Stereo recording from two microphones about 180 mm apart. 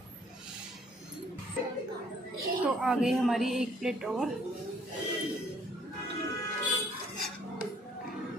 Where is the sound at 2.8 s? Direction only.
Centre (ahead or behind).